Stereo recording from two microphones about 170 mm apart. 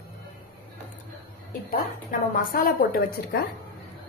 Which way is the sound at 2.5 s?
60° left (ahead or behind).